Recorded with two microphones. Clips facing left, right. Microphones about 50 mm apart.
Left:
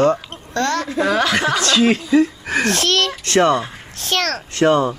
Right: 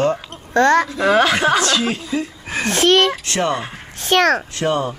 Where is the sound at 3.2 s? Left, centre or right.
Left.